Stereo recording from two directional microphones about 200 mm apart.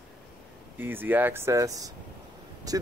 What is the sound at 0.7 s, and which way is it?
Speech, 10° right (ahead or behind).